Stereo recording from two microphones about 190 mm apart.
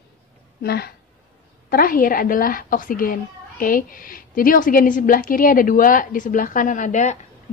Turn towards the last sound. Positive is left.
turn(degrees=40)  # may be behind; listen again after turning